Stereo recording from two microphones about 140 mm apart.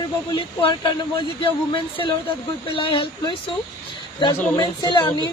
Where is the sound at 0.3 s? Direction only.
35° left (ahead or behind).